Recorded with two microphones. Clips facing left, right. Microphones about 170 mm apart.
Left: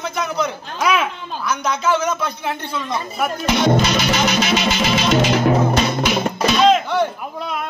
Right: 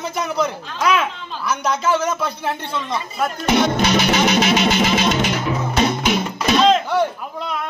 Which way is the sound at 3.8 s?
55° right (ahead or behind).